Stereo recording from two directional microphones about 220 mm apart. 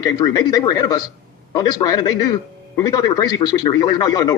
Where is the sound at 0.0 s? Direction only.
15° left (ahead or behind).